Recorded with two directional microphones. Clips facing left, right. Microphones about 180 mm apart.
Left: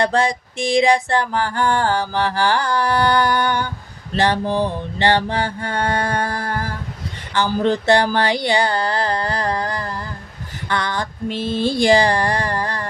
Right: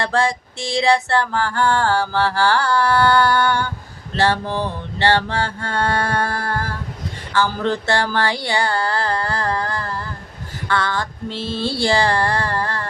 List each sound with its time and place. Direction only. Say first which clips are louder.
0.0 s music: left 2 dB; 15° left (ahead or behind)